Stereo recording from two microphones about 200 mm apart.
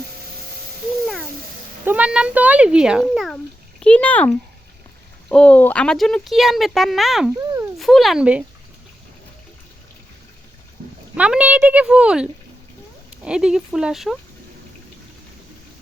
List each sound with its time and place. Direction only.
1.8 s a child's voice: 10° right (ahead or behind)
7.3 s a sound: 15° right (ahead or behind)
7.8 s speech: centre (ahead or behind)
11.2 s speech: 5° right (ahead or behind)